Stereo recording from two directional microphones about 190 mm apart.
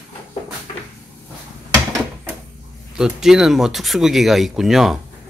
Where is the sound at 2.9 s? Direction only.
5° right (ahead or behind).